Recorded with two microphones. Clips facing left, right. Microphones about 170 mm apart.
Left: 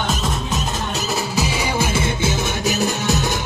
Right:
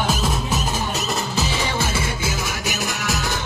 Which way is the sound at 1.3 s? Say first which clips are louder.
Left 4 dB; 10° left (ahead or behind).